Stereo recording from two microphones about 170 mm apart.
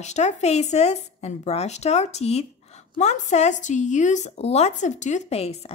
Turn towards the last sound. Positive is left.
turn(degrees=35)  # may be behind; listen again after turning